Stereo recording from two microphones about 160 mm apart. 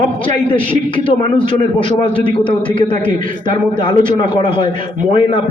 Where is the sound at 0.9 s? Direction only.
35° left (ahead or behind).